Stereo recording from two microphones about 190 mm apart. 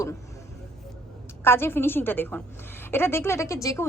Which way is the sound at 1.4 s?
10° left (ahead or behind).